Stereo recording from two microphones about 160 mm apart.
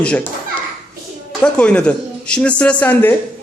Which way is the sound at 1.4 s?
5° left (ahead or behind).